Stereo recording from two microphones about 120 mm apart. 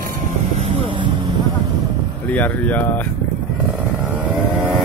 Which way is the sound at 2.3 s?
15° left (ahead or behind).